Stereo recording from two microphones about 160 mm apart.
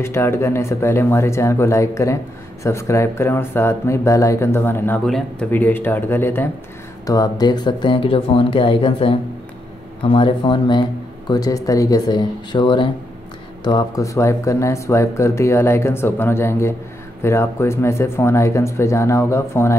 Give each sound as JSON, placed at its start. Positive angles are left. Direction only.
{"t": 0.0, "sound": "speech", "side_deg": 15}